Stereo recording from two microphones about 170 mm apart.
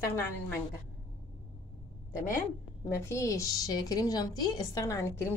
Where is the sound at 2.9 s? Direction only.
15° left (ahead or behind).